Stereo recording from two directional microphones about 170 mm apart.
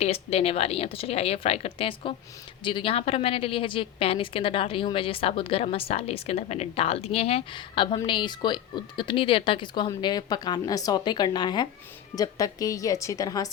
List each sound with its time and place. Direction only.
0.0 s a woman's voice: 35° left (ahead or behind); by 13.5 s 20° left (ahead or behind)